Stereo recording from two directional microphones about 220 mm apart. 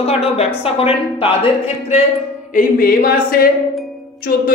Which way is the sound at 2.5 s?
40° left (ahead or behind).